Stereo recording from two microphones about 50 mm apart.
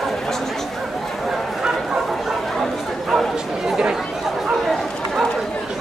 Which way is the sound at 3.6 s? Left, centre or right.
Centre.